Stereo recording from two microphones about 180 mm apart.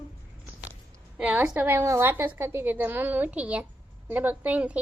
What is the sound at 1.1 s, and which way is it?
A woman's voice, 10° right (ahead or behind).